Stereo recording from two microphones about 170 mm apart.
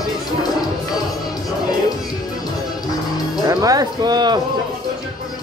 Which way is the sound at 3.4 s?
20° right (ahead or behind).